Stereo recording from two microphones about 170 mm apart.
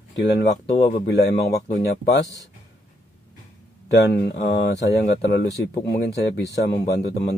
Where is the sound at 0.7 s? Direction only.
40° left (ahead or behind).